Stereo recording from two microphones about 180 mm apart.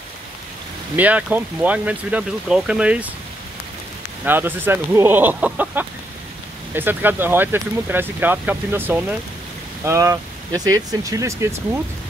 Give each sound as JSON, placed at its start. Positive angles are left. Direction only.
{"t": 0.9, "sound": "speech", "side_deg": -10}
{"t": 4.2, "sound": "speech", "side_deg": -10}